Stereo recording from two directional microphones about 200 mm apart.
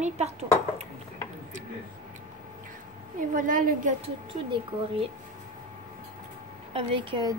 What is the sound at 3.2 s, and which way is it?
Speech, 40° right (ahead or behind).